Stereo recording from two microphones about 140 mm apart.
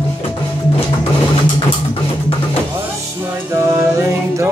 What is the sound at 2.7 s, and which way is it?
Music, 15° right (ahead or behind).